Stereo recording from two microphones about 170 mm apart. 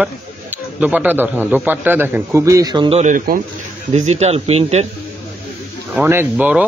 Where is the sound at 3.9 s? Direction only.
40° right (ahead or behind).